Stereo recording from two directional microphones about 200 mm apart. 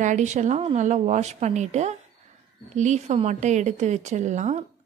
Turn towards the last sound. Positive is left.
turn(degrees=-35)  # may be behind; listen again after turning